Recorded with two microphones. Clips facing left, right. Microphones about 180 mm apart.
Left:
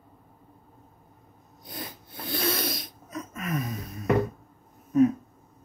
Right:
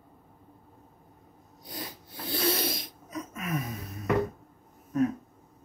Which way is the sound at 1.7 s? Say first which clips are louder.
Left 1 dB; 30° right (ahead or behind).